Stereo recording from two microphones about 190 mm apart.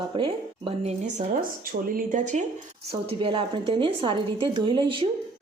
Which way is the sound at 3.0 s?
30° right (ahead or behind).